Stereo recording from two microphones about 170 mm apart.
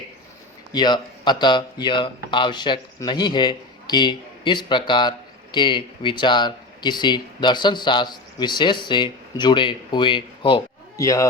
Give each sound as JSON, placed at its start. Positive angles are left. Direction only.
{"t": 0.7, "sound": "speech", "side_deg": 25}
{"t": 10.9, "sound": "speech", "side_deg": 20}